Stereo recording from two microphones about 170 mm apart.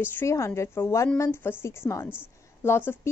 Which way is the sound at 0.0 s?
15° left (ahead or behind).